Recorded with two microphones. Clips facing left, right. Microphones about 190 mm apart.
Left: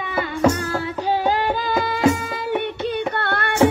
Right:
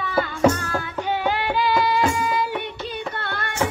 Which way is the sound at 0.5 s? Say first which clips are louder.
Left 3 dB; 30° left (ahead or behind).